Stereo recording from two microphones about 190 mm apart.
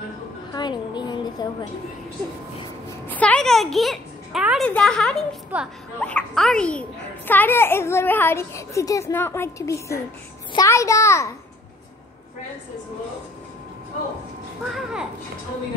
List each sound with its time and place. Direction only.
0.5 s a woman's voice: 25° left (ahead or behind)
3.1 s a woman's voice: 5° left (ahead or behind)
5.5 s speech: 10° right (ahead or behind)
5.9 s a child's voice: 5° left (ahead or behind)
14.7 s a woman's voice: 5° right (ahead or behind)